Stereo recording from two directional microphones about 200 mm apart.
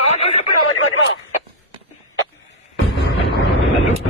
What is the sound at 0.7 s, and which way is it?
Radio, 85° left.